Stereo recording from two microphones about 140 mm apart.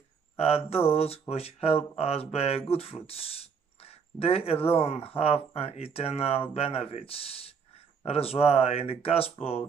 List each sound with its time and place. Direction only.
0.4 s speech: 45° left (ahead or behind)